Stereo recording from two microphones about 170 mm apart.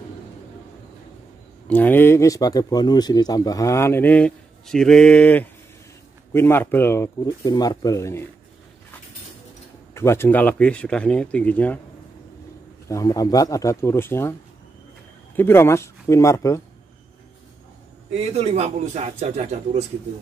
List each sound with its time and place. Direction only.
1.7 s speech: 10° left (ahead or behind)
9.9 s speech: 15° left (ahead or behind)
12.8 s speech: 20° left (ahead or behind)
15.3 s speech: 15° left (ahead or behind)
18.1 s a man's voice: 35° right (ahead or behind)